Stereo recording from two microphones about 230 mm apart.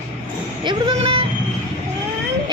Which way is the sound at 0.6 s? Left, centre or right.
Right.